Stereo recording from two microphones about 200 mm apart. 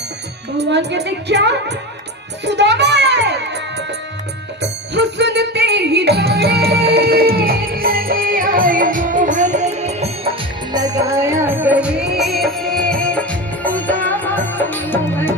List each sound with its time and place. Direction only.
0.5 s a woman's voice: 55° right (ahead or behind)
2.4 s music: 60° right (ahead or behind); by 10.1 s 35° right (ahead or behind)
10.7 s music: 20° right (ahead or behind); by 15.3 s 10° left (ahead or behind)